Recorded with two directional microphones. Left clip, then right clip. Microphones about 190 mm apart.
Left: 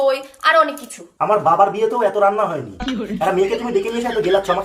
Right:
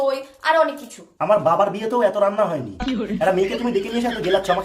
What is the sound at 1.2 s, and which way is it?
A woman's voice, 10° right (ahead or behind).